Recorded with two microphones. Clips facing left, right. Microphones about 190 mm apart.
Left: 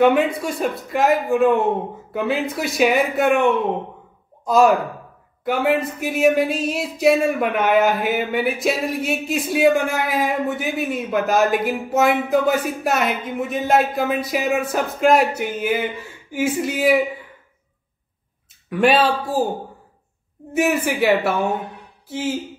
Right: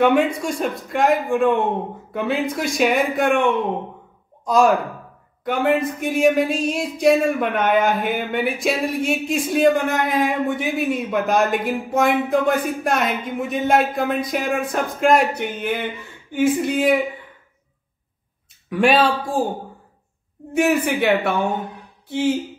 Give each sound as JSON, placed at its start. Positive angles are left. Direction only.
{"t": 0.0, "sound": "a man's voice", "side_deg": 0}
{"t": 18.7, "sound": "a man's voice", "side_deg": 0}
{"t": 20.5, "sound": "a man's voice", "side_deg": 0}